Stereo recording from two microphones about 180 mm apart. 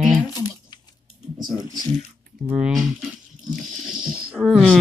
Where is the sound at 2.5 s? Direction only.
5° right (ahead or behind).